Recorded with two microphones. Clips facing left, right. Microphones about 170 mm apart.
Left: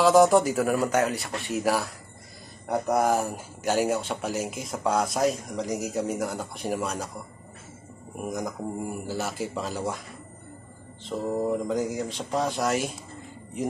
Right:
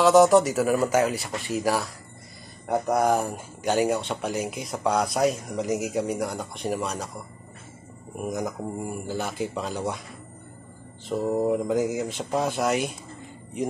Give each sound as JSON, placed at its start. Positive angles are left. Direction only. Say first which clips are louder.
{"t": 0.0, "sound": "speech", "louder": "right 2 dB", "side_deg": 0}
{"t": 2.9, "sound": "speech", "louder": "right 1 dB", "side_deg": 0}
{"t": 8.2, "sound": "speech", "louder": "right 2 dB", "side_deg": 0}
{"t": 11.1, "sound": "speech", "louder": "right 3 dB", "side_deg": -10}